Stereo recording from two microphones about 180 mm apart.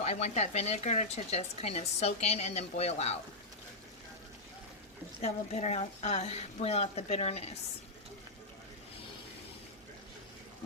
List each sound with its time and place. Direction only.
0.0 s speech: 40° left (ahead or behind)
5.2 s speech: 40° left (ahead or behind)